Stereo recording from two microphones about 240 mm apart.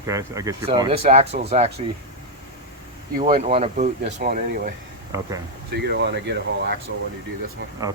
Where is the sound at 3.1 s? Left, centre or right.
Right.